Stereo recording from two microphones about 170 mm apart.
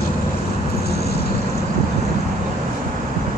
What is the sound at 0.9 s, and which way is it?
Vehicle, 70° left (ahead or behind).